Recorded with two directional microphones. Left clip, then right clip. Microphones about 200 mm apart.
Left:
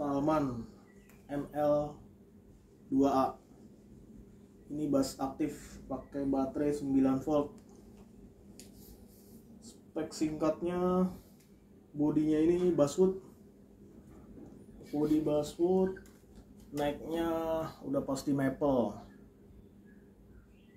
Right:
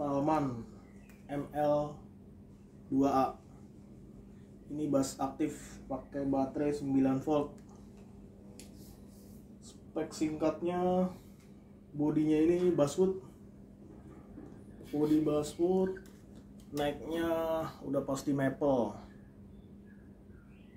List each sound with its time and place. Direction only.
0.0 s a sound: 5° left (ahead or behind)
1.3 s speech: centre (ahead or behind)
3.0 s speech: centre (ahead or behind)
4.7 s speech: centre (ahead or behind)
10.1 s speech: 5° left (ahead or behind)
15.0 s speech: 10° right (ahead or behind)